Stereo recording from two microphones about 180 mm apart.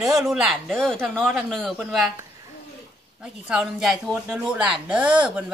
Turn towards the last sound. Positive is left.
turn(degrees=-5)  # may be behind; listen again after turning